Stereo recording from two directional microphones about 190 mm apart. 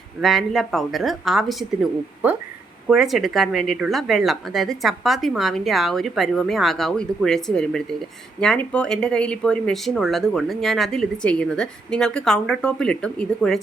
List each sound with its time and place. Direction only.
0.2 s speech: centre (ahead or behind)